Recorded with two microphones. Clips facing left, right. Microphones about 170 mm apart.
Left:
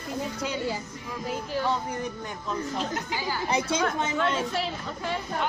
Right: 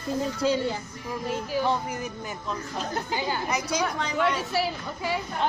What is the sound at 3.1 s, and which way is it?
Speech, 20° right (ahead or behind).